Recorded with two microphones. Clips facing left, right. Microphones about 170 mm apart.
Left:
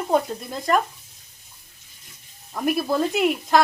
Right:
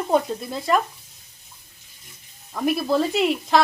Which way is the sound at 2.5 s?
Centre (ahead or behind).